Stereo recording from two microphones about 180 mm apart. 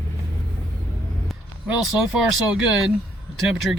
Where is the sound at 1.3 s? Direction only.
5° right (ahead or behind).